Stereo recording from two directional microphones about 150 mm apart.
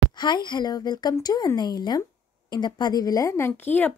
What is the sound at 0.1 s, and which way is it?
A woman's voice, 30° left (ahead or behind).